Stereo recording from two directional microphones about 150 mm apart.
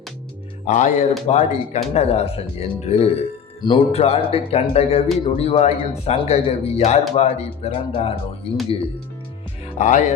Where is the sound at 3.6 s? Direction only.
30° left (ahead or behind).